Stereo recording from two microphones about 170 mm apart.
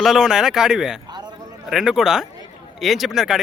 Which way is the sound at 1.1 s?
25° right (ahead or behind).